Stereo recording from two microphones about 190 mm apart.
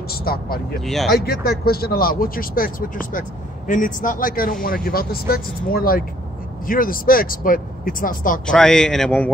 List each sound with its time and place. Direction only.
0.1 s speech: 55° left (ahead or behind)
0.8 s a man's voice: centre (ahead or behind)
1.1 s speech: 55° left (ahead or behind)
8.5 s a man's voice: 5° left (ahead or behind)